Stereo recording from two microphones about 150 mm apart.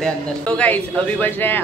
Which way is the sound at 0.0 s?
10° left (ahead or behind).